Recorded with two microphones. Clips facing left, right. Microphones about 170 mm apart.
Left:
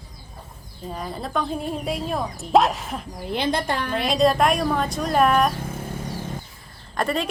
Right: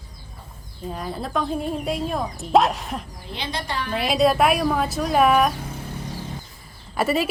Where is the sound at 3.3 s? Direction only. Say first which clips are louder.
Left 5 dB; 50° left (ahead or behind).